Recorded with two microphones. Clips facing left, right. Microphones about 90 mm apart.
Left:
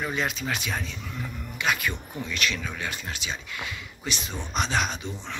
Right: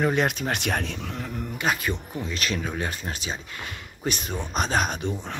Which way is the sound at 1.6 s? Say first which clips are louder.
Right 1 dB; 35° right (ahead or behind).